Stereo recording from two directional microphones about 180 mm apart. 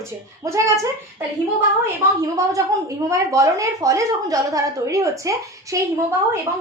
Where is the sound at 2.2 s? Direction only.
20° right (ahead or behind).